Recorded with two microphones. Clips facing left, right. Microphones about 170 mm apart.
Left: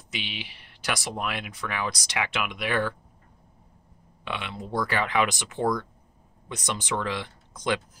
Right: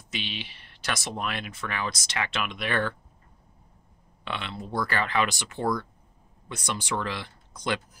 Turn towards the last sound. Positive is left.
turn(degrees=15)  # may be behind; listen again after turning